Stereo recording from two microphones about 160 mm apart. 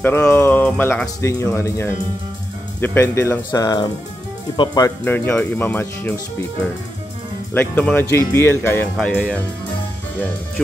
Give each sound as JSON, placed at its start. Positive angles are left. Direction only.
{"t": 0.0, "sound": "speech", "side_deg": 15}
{"t": 5.0, "sound": "speech", "side_deg": 10}
{"t": 7.5, "sound": "speech", "side_deg": 10}